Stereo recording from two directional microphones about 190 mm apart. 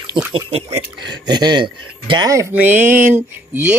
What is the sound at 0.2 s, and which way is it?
Speech, 25° right (ahead or behind).